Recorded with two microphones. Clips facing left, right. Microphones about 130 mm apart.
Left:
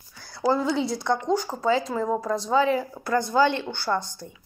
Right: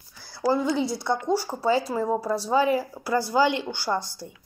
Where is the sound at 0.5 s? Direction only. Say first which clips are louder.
Even; centre (ahead or behind).